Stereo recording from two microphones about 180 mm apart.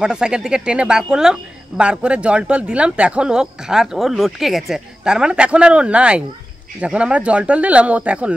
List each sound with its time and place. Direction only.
0.0 s speech: 5° right (ahead or behind)